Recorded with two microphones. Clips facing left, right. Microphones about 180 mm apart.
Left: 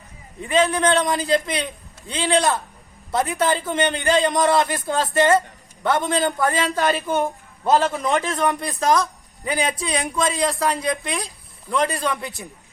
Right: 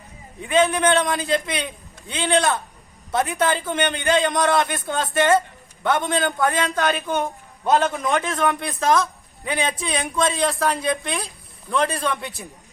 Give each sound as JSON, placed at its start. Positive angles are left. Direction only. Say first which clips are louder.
{"t": 0.4, "sound": "a man's voice", "louder": "even", "side_deg": 0}